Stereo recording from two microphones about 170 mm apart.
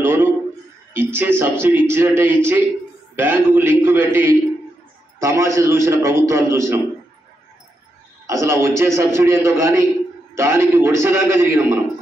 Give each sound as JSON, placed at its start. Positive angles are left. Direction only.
{"t": 0.0, "sound": "a sound", "side_deg": -15}
{"t": 0.9, "sound": "a man's voice", "side_deg": -10}
{"t": 8.3, "sound": "a man's voice", "side_deg": -15}